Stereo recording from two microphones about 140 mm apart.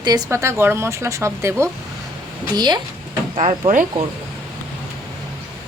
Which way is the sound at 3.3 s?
45° right (ahead or behind).